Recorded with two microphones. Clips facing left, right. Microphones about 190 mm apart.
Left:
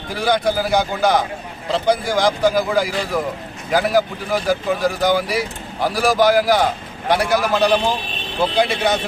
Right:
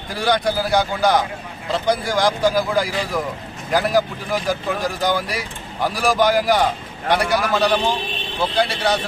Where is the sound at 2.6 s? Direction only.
5° left (ahead or behind).